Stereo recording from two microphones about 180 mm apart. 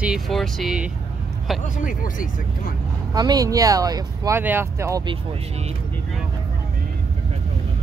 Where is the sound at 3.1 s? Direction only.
20° right (ahead or behind).